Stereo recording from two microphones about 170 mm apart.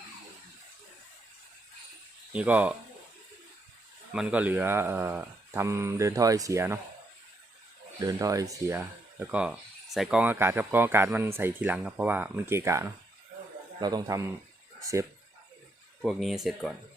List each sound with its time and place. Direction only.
2.3 s speech: 10° right (ahead or behind)
4.1 s speech: 5° right (ahead or behind)
8.0 s a man's voice: 20° right (ahead or behind)
16.0 s speech: centre (ahead or behind)